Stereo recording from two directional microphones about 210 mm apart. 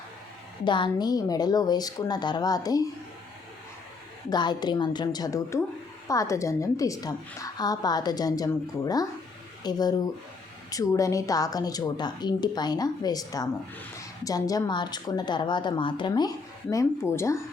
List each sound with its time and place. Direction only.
0.6 s a woman's voice: 20° left (ahead or behind)
4.3 s a woman's voice: 20° left (ahead or behind)